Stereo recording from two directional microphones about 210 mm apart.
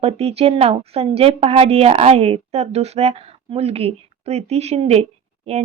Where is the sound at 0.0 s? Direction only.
30° right (ahead or behind).